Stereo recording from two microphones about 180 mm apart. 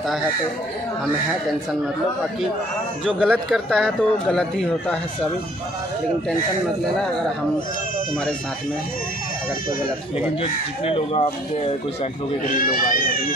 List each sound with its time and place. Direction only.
3.1 s a man's voice: centre (ahead or behind)
10.4 s speech: 35° left (ahead or behind)
12.5 s speech: 50° left (ahead or behind)